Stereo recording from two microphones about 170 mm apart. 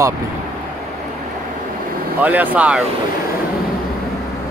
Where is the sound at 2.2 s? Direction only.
10° right (ahead or behind).